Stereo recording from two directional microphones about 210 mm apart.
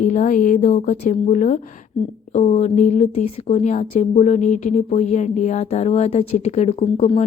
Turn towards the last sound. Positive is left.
turn(degrees=30)  # may be behind; listen again after turning